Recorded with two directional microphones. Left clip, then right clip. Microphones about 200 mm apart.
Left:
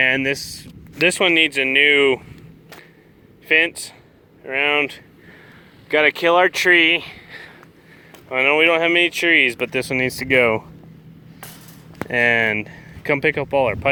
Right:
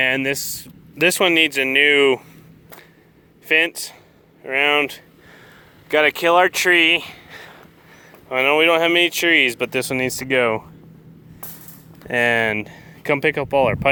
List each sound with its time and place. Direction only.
0.0 s speech: 10° right (ahead or behind)
3.4 s speech: 10° right (ahead or behind)
12.0 s speech: 15° right (ahead or behind)